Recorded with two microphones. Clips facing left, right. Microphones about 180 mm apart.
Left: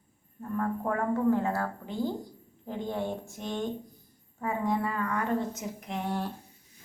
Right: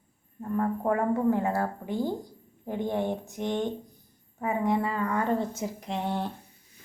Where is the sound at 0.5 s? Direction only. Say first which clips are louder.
Right 4 dB; 20° right (ahead or behind).